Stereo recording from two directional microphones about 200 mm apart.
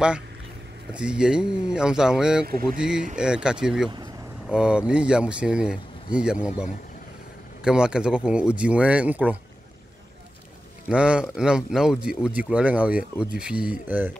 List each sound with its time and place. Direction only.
0.9 s speech: 5° right (ahead or behind)
2.4 s speech: 45° right (ahead or behind)
2.8 s speech: 5° right (ahead or behind)
10.9 s speech: 5° right (ahead or behind)